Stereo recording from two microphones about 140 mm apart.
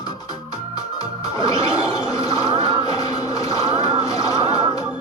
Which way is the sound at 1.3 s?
25° left (ahead or behind).